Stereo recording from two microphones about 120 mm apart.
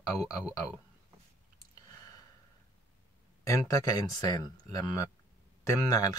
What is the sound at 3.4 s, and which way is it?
Speech, 25° left (ahead or behind).